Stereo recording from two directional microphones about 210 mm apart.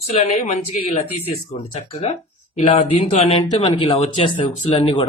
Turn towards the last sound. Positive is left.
turn(degrees=25)  # may be behind; listen again after turning